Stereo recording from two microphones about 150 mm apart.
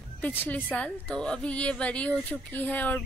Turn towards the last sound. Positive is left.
turn(degrees=10)  # may be behind; listen again after turning